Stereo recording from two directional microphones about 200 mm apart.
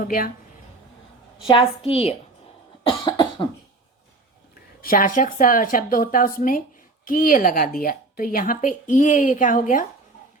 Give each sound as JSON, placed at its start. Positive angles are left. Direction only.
{"t": 1.5, "sound": "a woman's voice", "side_deg": 25}
{"t": 2.8, "sound": "cough", "side_deg": 25}
{"t": 4.5, "sound": "a woman's voice", "side_deg": 45}